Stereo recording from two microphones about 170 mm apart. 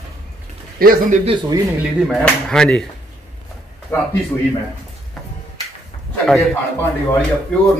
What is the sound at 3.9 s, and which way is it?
Speech, 15° left (ahead or behind).